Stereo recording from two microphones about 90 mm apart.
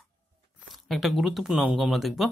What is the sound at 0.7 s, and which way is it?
Speech, centre (ahead or behind).